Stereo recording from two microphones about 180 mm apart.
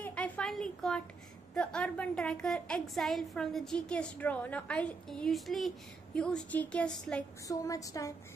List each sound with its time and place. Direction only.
0.0 s a sound: 5° left (ahead or behind)
1.5 s a woman's voice: 5° left (ahead or behind)
7.4 s a woman's voice: 20° left (ahead or behind)